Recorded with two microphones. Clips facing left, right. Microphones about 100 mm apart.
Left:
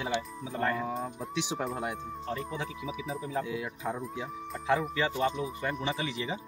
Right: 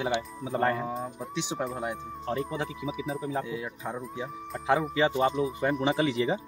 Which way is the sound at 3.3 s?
25° right (ahead or behind).